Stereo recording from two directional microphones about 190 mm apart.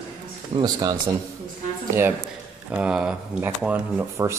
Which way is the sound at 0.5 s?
20° right (ahead or behind).